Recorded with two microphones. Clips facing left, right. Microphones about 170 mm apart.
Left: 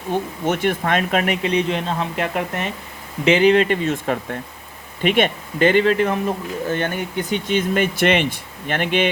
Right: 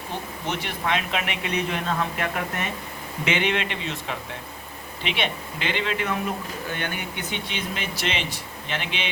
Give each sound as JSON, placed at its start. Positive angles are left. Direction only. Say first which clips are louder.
{"t": 0.4, "sound": "speech", "louder": "left 7 dB", "side_deg": 50}
{"t": 1.4, "sound": "speech", "louder": "left 7 dB", "side_deg": 30}